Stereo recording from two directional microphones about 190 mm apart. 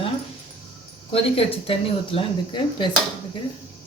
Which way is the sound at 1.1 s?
30° left (ahead or behind).